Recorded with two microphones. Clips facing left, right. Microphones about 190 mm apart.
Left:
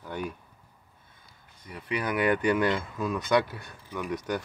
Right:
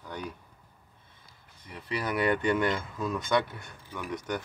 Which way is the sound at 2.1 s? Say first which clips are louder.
Left 2 dB; 30° right (ahead or behind).